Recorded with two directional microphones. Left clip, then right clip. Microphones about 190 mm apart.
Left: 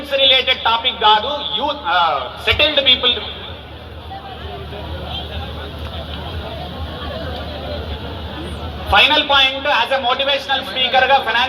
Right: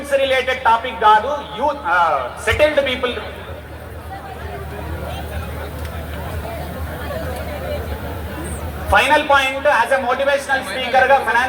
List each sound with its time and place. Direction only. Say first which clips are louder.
0.1 s a man's voice: left 3 dB; 15° left (ahead or behind)
8.9 s a man's voice: left 1 dB; 5° left (ahead or behind)